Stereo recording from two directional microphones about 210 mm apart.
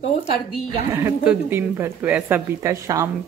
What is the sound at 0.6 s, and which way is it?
Speech, 15° right (ahead or behind).